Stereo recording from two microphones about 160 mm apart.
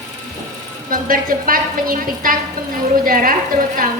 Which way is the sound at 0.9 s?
60° right (ahead or behind).